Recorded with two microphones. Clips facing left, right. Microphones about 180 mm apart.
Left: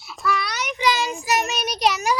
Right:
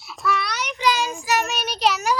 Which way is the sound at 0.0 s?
Centre (ahead or behind).